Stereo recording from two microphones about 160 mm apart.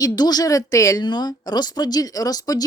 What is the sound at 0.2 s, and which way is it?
A woman's voice, 25° left (ahead or behind).